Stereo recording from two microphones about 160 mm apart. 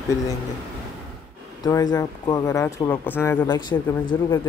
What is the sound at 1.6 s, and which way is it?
Speech, 20° left (ahead or behind).